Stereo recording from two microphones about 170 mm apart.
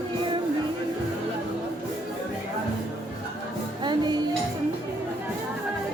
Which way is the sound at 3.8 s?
25° right (ahead or behind).